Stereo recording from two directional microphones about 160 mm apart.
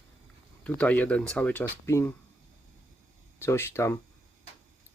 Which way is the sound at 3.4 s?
15° left (ahead or behind).